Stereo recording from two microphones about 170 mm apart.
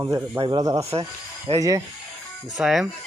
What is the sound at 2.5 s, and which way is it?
Speech, centre (ahead or behind).